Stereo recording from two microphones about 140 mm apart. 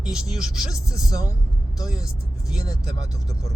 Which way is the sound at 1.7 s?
5° right (ahead or behind).